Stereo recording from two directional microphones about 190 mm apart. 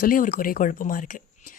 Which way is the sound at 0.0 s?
45° left (ahead or behind).